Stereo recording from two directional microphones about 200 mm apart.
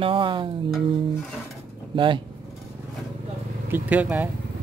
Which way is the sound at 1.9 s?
25° right (ahead or behind).